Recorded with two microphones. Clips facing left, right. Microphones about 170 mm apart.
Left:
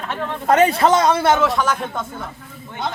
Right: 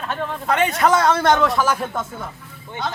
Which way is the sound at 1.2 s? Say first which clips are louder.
Even; 5° left (ahead or behind).